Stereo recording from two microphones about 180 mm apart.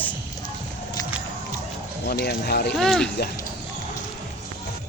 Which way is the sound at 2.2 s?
65° left (ahead or behind).